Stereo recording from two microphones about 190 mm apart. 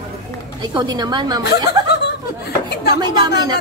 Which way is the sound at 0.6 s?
20° right (ahead or behind).